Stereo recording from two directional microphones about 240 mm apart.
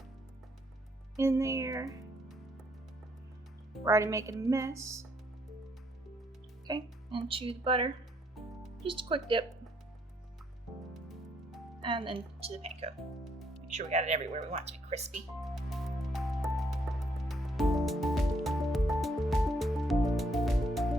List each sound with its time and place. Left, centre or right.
1.1 s a woman's voice: centre
3.8 s a woman's voice: centre
6.7 s speech: centre
8.4 s music: centre
8.8 s speech: right
10.9 s music: centre
11.8 s speech: right
15.4 s music: centre